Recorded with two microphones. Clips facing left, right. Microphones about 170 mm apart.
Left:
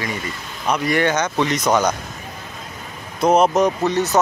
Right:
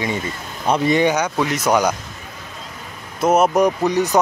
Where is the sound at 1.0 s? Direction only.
10° right (ahead or behind).